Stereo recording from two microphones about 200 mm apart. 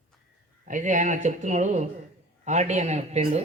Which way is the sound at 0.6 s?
40° right (ahead or behind).